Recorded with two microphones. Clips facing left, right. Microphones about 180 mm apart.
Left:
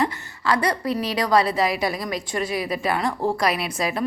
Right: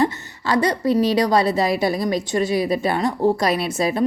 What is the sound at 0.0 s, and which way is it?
A woman's voice, 25° right (ahead or behind).